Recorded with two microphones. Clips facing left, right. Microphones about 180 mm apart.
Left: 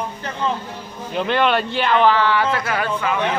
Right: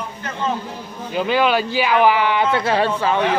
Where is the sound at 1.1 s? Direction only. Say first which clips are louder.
Right 1 dB; 5° right (ahead or behind).